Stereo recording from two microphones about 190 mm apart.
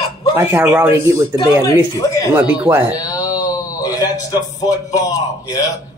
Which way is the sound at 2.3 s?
10° right (ahead or behind).